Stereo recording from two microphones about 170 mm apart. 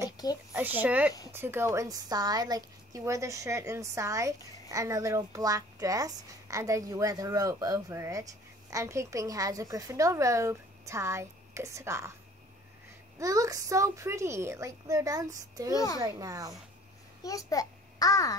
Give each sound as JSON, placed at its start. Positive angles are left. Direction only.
{"t": 0.5, "sound": "a woman's voice", "side_deg": -10}
{"t": 13.2, "sound": "a woman's voice", "side_deg": -20}
{"t": 15.7, "sound": "a child's voice", "side_deg": 20}
{"t": 16.0, "sound": "a woman's voice", "side_deg": -20}
{"t": 17.2, "sound": "a child's voice", "side_deg": 20}